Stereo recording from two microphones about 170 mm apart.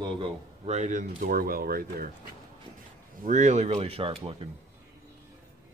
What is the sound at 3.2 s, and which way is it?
Speech, 45° right (ahead or behind).